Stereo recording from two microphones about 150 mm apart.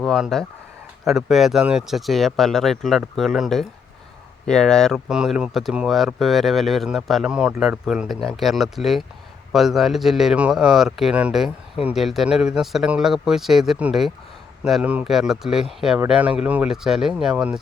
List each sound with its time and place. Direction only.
0.0 s speech: centre (ahead or behind)